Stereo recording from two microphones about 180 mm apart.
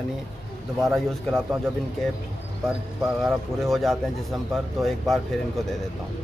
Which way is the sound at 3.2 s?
Centre (ahead or behind).